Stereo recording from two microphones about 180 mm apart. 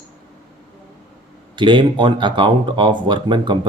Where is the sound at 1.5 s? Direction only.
25° right (ahead or behind).